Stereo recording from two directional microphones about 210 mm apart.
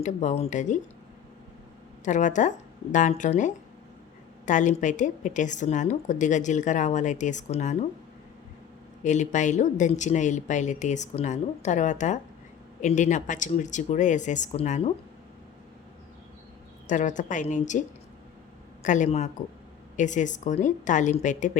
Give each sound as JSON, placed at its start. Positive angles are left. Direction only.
{"t": 0.0, "sound": "a woman's voice", "side_deg": 35}
{"t": 2.0, "sound": "a woman's voice", "side_deg": 35}
{"t": 9.0, "sound": "a woman's voice", "side_deg": 35}
{"t": 16.8, "sound": "a woman's voice", "side_deg": 35}